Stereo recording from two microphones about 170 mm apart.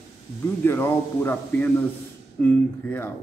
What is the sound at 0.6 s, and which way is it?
A man's voice, 15° left (ahead or behind).